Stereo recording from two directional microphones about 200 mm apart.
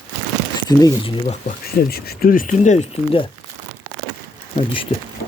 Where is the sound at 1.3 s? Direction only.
45° left (ahead or behind); by 3.2 s 30° left (ahead or behind).